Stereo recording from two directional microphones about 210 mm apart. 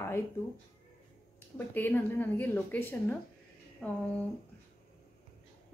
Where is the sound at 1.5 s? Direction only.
10° left (ahead or behind).